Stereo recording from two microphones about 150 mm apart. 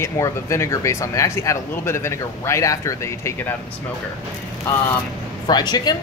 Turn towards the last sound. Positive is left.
turn(degrees=30)  # may be behind; listen again after turning